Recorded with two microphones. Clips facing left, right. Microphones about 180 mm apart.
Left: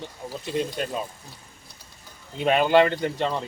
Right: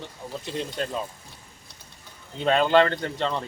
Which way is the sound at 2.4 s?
10° left (ahead or behind).